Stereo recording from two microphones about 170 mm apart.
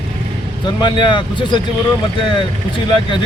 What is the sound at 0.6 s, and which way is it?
Speech, 25° left (ahead or behind).